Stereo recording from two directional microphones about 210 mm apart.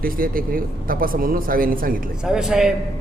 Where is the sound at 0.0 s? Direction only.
45° right (ahead or behind).